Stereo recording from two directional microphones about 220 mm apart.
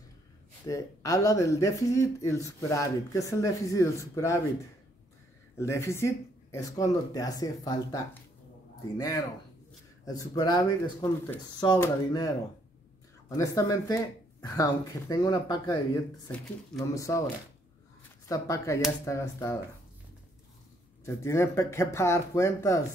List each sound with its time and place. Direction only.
0.7 s speech: 15° left (ahead or behind)
5.6 s speech: 15° left (ahead or behind)
13.4 s speech: 15° left (ahead or behind)
18.3 s speech: 15° left (ahead or behind)
21.0 s speech: 10° left (ahead or behind)